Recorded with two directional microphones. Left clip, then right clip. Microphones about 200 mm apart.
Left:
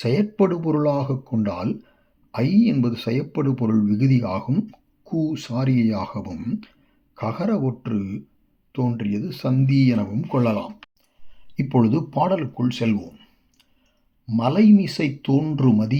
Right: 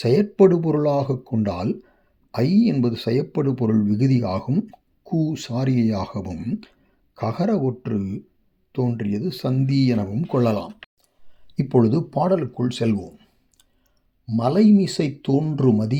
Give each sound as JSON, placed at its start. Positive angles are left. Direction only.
{"t": 0.0, "sound": "speech", "side_deg": -35}